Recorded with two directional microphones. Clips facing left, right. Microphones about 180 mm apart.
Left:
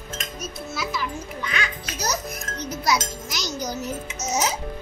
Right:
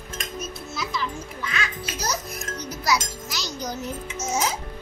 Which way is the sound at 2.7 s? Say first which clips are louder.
Left 1 dB; 25° left (ahead or behind).